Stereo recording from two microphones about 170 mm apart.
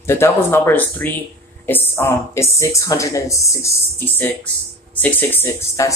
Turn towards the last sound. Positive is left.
turn(degrees=15)  # may be behind; listen again after turning